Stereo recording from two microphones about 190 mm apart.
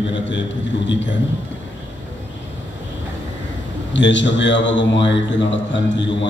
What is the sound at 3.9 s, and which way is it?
A man's voice, 75° left (ahead or behind).